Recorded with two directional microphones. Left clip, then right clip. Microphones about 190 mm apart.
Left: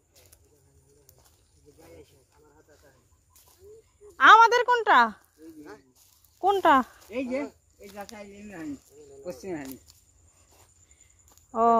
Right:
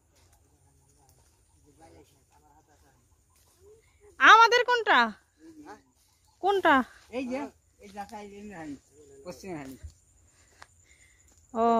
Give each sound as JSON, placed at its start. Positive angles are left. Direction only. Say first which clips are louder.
{"t": 4.2, "sound": "speech", "louder": "left 2 dB", "side_deg": -15}
{"t": 11.5, "sound": "speech", "louder": "left 3 dB", "side_deg": -15}